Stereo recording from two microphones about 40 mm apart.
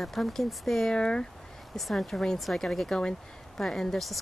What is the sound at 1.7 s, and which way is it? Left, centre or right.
Speech, centre.